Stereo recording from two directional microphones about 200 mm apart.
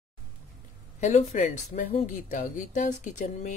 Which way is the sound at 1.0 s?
35° left (ahead or behind).